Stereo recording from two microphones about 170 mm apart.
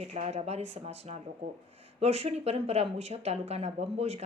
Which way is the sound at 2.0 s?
40° right (ahead or behind).